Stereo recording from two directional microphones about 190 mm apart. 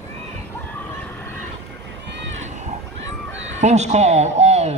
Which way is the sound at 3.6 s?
35° right (ahead or behind).